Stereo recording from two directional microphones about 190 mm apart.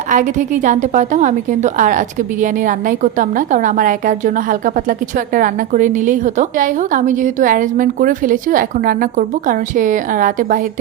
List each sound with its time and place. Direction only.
0.1 s a woman's voice: 40° right (ahead or behind)